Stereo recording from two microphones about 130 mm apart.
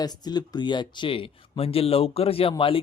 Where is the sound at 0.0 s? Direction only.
30° left (ahead or behind).